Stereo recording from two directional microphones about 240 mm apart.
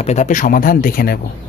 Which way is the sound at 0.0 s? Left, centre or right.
Left.